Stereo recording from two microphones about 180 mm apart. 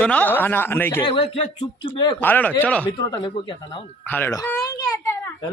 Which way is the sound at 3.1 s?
25° left (ahead or behind).